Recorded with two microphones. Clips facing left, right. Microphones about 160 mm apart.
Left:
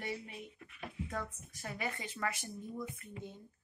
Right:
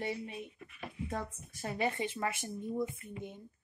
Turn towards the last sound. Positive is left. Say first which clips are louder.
# right 3 dB
turn(degrees=-20)  # may be behind; listen again after turning